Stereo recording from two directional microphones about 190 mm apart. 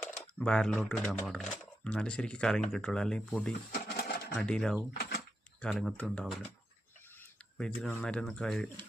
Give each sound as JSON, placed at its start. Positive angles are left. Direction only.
{"t": 0.3, "sound": "speech", "side_deg": 5}
{"t": 3.7, "sound": "a sound", "side_deg": 55}
{"t": 4.4, "sound": "speech", "side_deg": 5}
{"t": 4.9, "sound": "a sound", "side_deg": 55}
{"t": 5.6, "sound": "speech", "side_deg": 0}
{"t": 7.8, "sound": "speech", "side_deg": 5}